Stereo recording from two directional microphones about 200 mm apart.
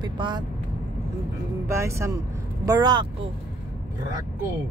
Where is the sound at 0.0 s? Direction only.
20° right (ahead or behind).